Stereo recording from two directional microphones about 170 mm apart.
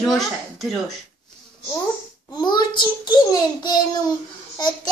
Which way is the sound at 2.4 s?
25° left (ahead or behind).